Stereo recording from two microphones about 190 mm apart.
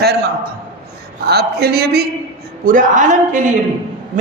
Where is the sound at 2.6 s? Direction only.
45° right (ahead or behind).